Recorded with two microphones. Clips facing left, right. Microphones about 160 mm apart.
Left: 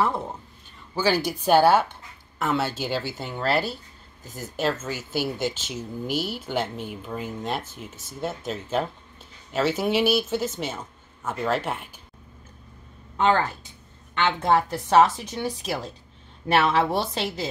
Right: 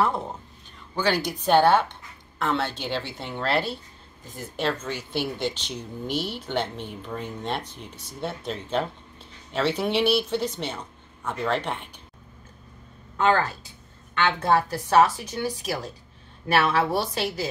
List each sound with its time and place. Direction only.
0.0 s a woman's voice: centre (ahead or behind)
14.1 s a woman's voice: 20° left (ahead or behind)